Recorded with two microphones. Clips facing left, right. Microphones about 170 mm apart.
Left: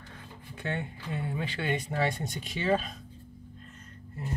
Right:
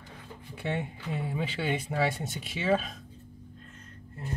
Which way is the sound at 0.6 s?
10° right (ahead or behind).